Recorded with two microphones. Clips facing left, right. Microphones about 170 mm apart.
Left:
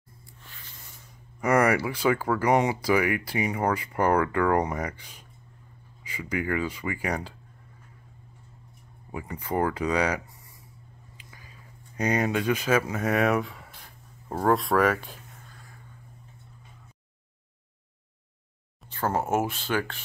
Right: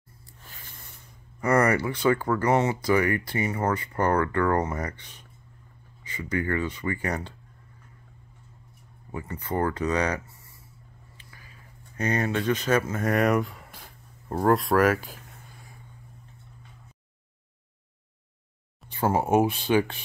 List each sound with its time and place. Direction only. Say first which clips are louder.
1.4 s speech: even; 10° left (ahead or behind)
9.1 s speech: left 1 dB; 10° left (ahead or behind)
11.2 s a sound: left 1 dB; 20° left (ahead or behind)
12.0 s speech: left 1 dB; 15° left (ahead or behind); by 15.1 s centre (ahead or behind)
18.9 s speech: right 3 dB; 15° right (ahead or behind)